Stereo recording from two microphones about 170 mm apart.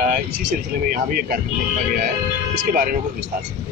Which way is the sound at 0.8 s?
60° right (ahead or behind).